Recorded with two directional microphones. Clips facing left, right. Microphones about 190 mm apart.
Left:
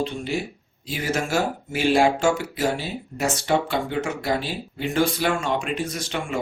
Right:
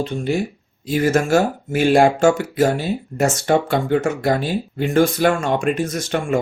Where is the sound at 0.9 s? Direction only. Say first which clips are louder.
Right 9 dB; 45° right (ahead or behind).